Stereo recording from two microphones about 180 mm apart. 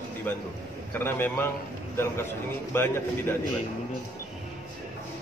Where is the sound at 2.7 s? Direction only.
15° left (ahead or behind).